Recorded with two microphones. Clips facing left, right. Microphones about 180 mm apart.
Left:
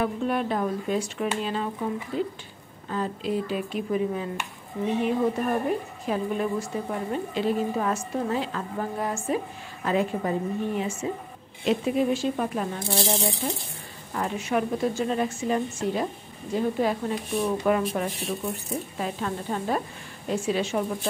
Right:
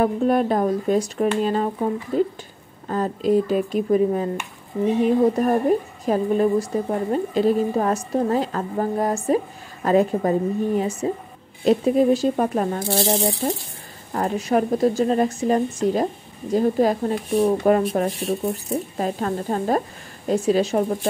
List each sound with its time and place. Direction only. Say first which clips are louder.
0.0 s a woman's voice: right 7 dB; 40° right (ahead or behind)
13.4 s a woman's voice: right 6 dB; 35° right (ahead or behind)